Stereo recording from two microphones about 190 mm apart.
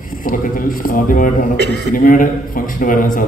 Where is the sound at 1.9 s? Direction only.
45° left (ahead or behind).